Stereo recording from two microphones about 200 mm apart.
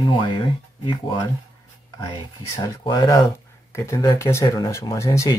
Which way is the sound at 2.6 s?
20° left (ahead or behind).